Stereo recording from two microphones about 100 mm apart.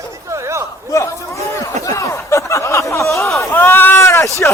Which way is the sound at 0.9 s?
30° left (ahead or behind).